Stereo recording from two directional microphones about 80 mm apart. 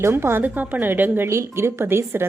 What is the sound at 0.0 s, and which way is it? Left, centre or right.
Speech, right.